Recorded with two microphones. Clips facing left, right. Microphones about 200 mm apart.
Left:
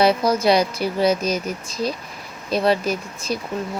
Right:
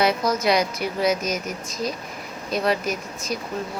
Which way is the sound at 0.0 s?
30° left (ahead or behind).